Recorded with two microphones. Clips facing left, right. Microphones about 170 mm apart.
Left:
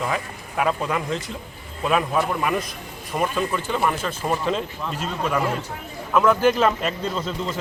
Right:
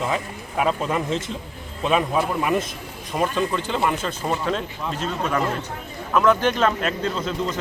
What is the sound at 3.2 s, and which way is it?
Speech, 5° left (ahead or behind).